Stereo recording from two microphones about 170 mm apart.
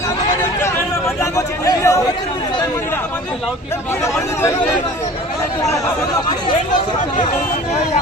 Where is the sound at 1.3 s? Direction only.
20° left (ahead or behind).